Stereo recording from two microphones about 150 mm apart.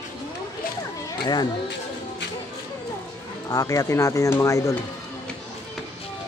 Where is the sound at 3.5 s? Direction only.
25° left (ahead or behind).